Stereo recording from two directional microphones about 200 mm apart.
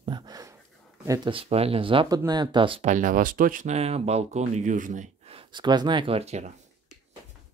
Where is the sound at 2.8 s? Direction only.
40° right (ahead or behind).